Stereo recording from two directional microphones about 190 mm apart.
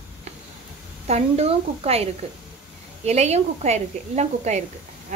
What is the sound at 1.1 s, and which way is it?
A woman's voice, 35° right (ahead or behind).